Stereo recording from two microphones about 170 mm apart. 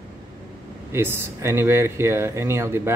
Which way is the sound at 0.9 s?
15° right (ahead or behind).